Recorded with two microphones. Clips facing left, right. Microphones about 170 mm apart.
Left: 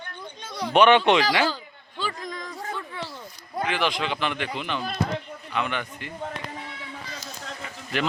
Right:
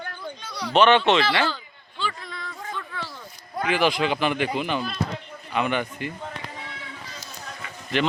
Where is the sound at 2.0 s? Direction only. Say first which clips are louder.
Left 1 dB; 40° left (ahead or behind).